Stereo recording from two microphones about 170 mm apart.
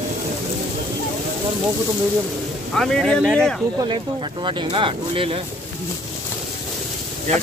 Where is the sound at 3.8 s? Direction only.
25° right (ahead or behind).